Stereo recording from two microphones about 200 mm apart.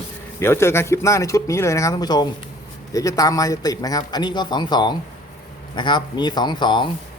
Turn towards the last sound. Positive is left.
turn(degrees=25)  # may be behind; listen again after turning